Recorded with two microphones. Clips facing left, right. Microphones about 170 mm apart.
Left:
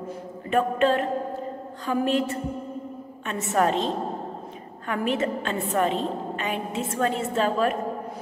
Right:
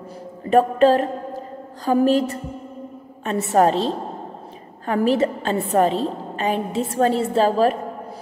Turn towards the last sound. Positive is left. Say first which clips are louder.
# right 6 dB
turn(degrees=-35)  # may be behind; listen again after turning